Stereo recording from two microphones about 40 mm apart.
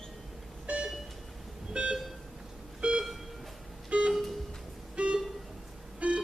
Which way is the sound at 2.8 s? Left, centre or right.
Right.